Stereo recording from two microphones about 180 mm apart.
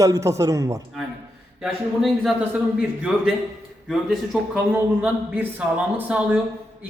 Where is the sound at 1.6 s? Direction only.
Centre (ahead or behind).